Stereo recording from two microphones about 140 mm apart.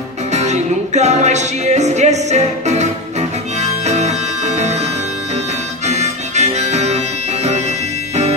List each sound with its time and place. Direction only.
0.3 s music: 55° right (ahead or behind)
5.9 s harmonica: 55° right (ahead or behind)